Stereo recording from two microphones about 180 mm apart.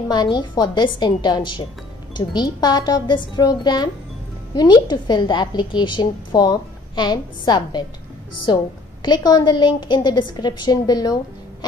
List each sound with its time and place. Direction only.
0.1 s a woman's voice: 25° left (ahead or behind)